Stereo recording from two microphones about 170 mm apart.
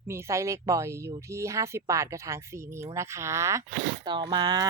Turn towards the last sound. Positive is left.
turn(degrees=-25)  # may be behind; listen again after turning